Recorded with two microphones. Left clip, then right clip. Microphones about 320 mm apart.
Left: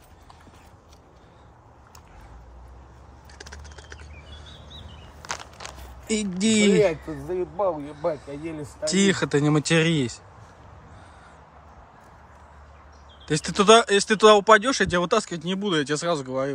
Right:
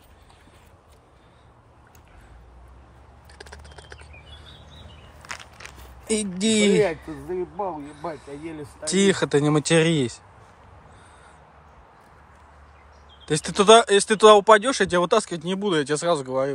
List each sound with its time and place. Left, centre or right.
5.2 s a sound: centre
6.0 s speech: centre
13.2 s speech: centre